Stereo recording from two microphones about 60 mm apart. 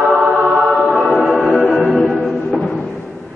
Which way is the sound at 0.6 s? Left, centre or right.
Centre.